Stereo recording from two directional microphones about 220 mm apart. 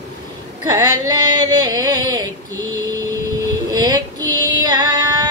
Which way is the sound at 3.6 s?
20° right (ahead or behind).